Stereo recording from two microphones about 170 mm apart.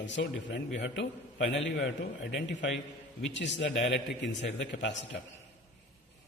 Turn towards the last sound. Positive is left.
turn(degrees=90)